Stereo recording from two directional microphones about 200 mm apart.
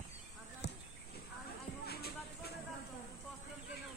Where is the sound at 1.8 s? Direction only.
50° left (ahead or behind).